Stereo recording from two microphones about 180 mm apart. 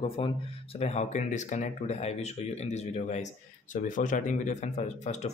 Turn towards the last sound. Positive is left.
turn(degrees=40)  # may be behind; listen again after turning